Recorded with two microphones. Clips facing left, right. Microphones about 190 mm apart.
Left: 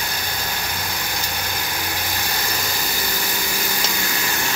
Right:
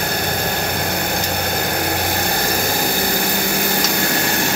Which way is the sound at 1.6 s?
60° right (ahead or behind).